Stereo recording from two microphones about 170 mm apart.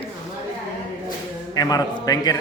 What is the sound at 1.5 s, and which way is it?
Speech, 20° left (ahead or behind).